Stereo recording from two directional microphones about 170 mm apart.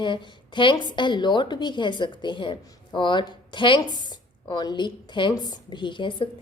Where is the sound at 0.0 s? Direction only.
30° left (ahead or behind).